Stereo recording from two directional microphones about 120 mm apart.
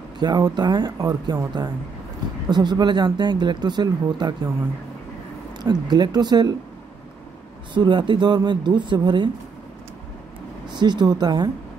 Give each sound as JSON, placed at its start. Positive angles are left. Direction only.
{"t": 0.2, "sound": "speech", "side_deg": -35}
{"t": 5.6, "sound": "speech", "side_deg": -35}
{"t": 7.7, "sound": "speech", "side_deg": -40}
{"t": 10.7, "sound": "speech", "side_deg": -35}